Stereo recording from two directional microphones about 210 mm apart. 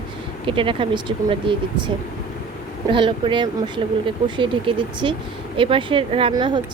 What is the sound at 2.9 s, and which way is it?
Speech, 25° right (ahead or behind).